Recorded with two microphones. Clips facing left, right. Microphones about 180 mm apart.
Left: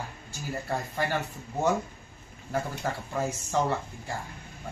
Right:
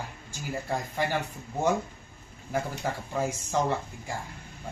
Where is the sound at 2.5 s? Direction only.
10° right (ahead or behind).